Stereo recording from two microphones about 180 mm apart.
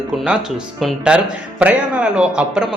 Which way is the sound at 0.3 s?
Centre (ahead or behind).